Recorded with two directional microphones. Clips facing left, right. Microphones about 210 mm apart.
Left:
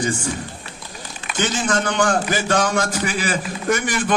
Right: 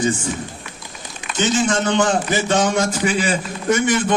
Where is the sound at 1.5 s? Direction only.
25° right (ahead or behind).